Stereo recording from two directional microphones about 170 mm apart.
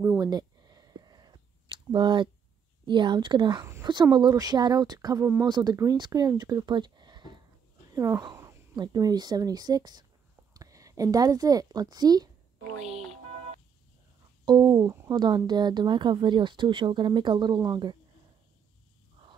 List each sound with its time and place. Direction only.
0.0 s a sound: 20° right (ahead or behind)
2.8 s a woman's voice: 25° right (ahead or behind)
14.4 s speech: 25° right (ahead or behind)